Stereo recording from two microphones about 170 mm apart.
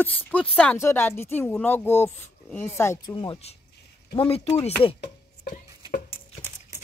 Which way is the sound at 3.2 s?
35° left (ahead or behind).